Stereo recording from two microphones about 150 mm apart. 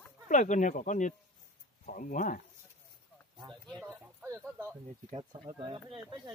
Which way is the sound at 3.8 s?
15° right (ahead or behind).